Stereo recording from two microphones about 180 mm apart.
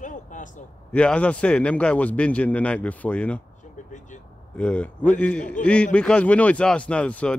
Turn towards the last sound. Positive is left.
turn(degrees=5)  # may be behind; listen again after turning